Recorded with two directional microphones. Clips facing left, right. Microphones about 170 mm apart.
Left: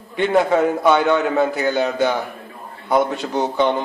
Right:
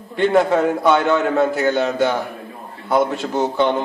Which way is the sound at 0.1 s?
Centre (ahead or behind).